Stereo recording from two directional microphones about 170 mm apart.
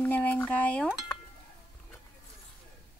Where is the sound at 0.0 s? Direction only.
10° left (ahead or behind).